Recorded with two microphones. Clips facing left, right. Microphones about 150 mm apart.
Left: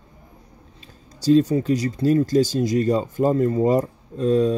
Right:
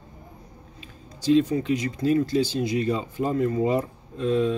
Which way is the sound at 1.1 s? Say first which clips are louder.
Left 4 dB; 40° left (ahead or behind).